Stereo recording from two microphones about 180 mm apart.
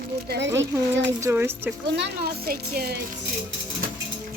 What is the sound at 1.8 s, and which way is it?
A child's voice, 70° right (ahead or behind).